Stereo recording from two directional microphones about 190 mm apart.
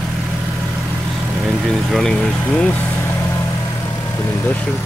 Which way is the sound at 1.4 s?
Centre (ahead or behind).